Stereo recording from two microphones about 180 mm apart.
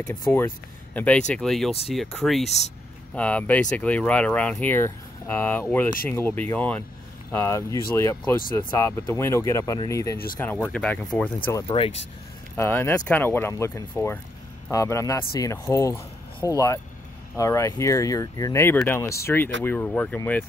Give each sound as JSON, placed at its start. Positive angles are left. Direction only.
{"t": 0.3, "sound": "speech", "side_deg": 10}
{"t": 11.6, "sound": "speech", "side_deg": 30}
{"t": 12.5, "sound": "speech", "side_deg": 10}